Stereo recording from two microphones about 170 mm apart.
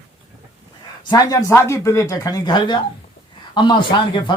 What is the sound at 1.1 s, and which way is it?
Speech, 20° left (ahead or behind).